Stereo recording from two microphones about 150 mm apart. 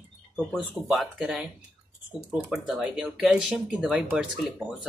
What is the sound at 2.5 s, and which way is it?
Speech, centre (ahead or behind).